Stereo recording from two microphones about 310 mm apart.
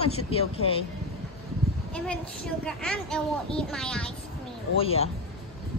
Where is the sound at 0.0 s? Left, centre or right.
Centre.